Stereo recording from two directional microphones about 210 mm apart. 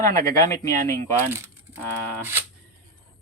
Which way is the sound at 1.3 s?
10° right (ahead or behind).